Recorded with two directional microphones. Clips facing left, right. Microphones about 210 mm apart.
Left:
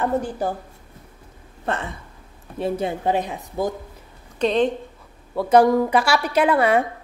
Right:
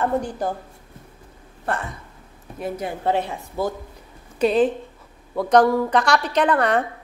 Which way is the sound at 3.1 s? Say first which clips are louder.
Right 4 dB; 15° left (ahead or behind).